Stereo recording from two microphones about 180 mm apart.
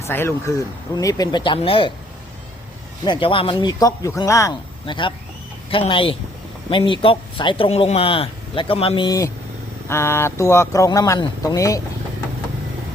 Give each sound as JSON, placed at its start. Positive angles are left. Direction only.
{"t": 0.0, "sound": "speech", "side_deg": 15}
{"t": 3.0, "sound": "speech", "side_deg": 25}